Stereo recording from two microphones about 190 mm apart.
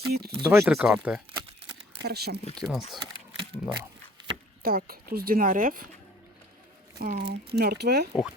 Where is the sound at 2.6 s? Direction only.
Centre (ahead or behind).